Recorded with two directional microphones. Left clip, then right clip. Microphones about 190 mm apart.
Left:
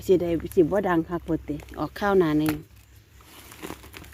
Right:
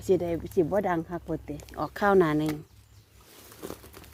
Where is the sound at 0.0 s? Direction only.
15° left (ahead or behind).